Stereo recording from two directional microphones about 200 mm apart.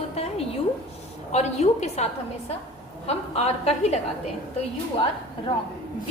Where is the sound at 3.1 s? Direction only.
30° left (ahead or behind).